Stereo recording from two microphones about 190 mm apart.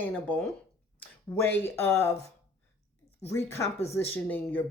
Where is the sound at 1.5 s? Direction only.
15° left (ahead or behind).